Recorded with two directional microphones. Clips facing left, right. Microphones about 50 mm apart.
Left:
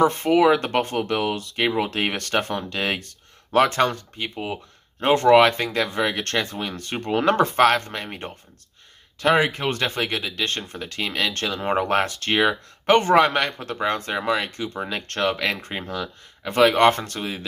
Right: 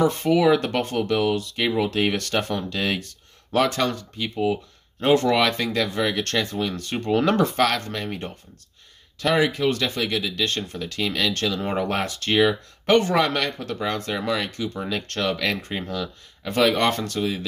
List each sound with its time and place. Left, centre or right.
0.0 s speech: left